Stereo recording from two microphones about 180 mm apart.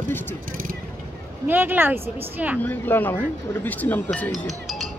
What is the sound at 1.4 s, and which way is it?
Speech, 10° right (ahead or behind).